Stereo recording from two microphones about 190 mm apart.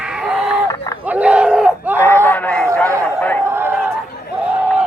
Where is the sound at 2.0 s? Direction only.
10° left (ahead or behind).